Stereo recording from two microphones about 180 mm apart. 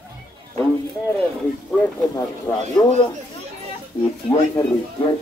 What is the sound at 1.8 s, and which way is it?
Speech, 15° left (ahead or behind).